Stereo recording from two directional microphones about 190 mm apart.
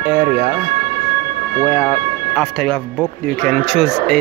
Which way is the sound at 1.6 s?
5° left (ahead or behind).